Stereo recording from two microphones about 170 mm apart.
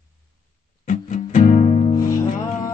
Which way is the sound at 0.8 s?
45° left (ahead or behind).